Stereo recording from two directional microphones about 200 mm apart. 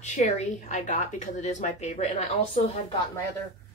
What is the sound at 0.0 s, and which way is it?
Speech, 35° left (ahead or behind).